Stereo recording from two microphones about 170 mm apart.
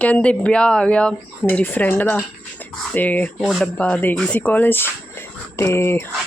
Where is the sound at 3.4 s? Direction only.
Centre (ahead or behind).